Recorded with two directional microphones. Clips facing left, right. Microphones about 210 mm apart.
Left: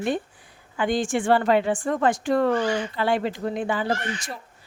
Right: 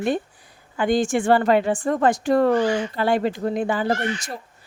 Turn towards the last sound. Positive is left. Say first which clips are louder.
# right 4 dB
turn(degrees=-40)  # may be behind; listen again after turning